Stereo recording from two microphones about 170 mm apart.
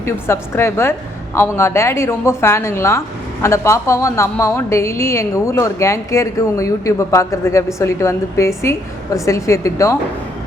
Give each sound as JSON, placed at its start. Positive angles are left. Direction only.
{"t": 0.0, "sound": "a woman's voice", "side_deg": 15}